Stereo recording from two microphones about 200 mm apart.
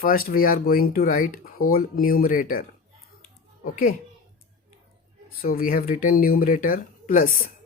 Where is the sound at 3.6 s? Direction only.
45° left (ahead or behind).